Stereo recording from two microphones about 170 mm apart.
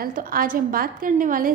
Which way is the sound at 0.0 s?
55° right (ahead or behind).